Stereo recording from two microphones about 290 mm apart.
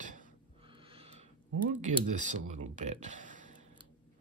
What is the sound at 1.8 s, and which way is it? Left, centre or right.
Speech, right.